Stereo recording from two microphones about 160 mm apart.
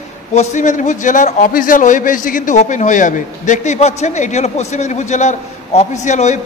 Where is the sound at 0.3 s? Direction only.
45° left (ahead or behind).